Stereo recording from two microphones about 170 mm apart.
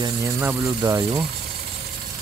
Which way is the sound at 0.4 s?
15° right (ahead or behind).